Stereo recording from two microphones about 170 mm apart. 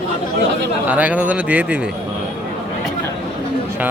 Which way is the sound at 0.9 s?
10° right (ahead or behind).